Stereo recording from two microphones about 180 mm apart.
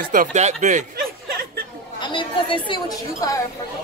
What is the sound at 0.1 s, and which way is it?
Speech, 45° right (ahead or behind).